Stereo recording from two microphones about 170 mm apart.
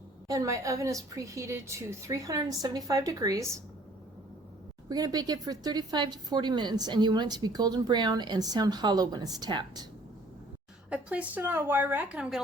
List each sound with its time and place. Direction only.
0.3 s speech: 20° right (ahead or behind)
4.9 s speech: 25° right (ahead or behind)
10.8 s a woman's voice: 5° right (ahead or behind)